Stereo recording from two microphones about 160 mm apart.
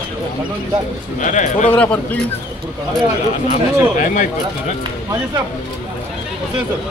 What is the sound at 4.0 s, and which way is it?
Speech, 50° left (ahead or behind).